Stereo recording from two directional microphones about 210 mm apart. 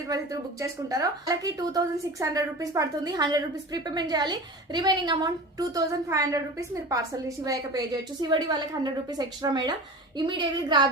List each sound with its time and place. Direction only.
0.1 s a woman's voice: 15° right (ahead or behind)